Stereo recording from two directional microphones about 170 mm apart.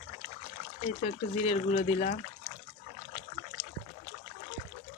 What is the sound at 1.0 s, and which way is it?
Speech, 40° left (ahead or behind).